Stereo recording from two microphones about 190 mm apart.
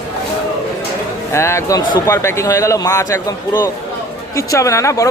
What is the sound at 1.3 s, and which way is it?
A man's voice, 15° left (ahead or behind).